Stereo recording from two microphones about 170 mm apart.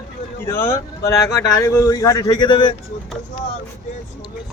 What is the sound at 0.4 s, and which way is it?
Speech, 15° left (ahead or behind).